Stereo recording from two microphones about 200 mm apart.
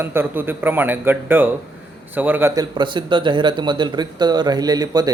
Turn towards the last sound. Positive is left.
turn(degrees=-20)  # may be behind; listen again after turning